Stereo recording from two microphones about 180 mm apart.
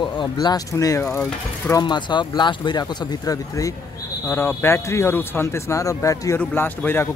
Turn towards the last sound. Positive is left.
turn(degrees=10)  # may be behind; listen again after turning